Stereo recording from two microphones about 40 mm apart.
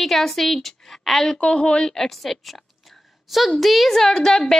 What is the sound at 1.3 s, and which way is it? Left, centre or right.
Speech, left.